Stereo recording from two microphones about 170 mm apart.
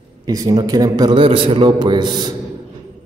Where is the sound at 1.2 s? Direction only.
35° right (ahead or behind).